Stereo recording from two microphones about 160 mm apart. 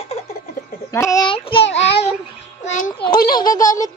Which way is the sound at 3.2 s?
25° left (ahead or behind).